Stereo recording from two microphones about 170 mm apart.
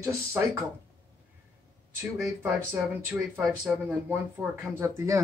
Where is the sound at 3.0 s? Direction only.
10° right (ahead or behind).